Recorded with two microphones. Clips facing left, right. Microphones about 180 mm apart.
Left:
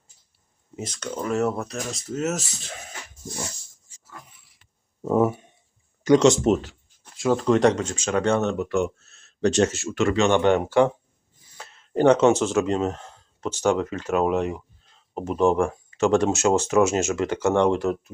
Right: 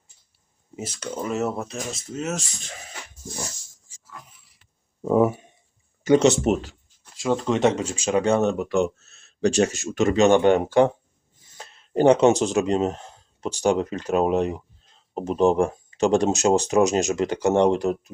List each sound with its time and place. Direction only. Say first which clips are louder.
0.8 s speech: even; 10° right (ahead or behind)
5.2 s speech: right 1 dB; 10° right (ahead or behind)
7.2 s speech: left 2 dB; centre (ahead or behind)
14.1 s speech: right 1 dB; 30° right (ahead or behind)